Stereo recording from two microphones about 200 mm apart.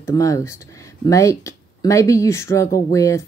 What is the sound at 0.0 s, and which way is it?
Speech, 15° left (ahead or behind).